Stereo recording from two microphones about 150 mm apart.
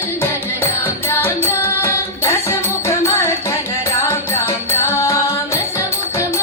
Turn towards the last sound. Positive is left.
turn(degrees=20)  # may be behind; listen again after turning